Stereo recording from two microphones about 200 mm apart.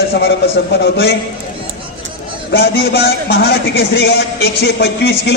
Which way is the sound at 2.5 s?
60° left (ahead or behind).